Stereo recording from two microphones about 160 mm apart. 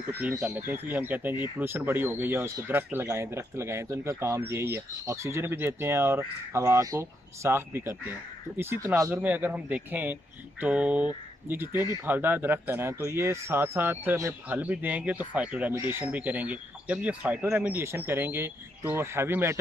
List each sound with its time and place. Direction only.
0.2 s speech: 15° right (ahead or behind)
11.7 s speech: 25° left (ahead or behind)
12.1 s speech: 15° right (ahead or behind)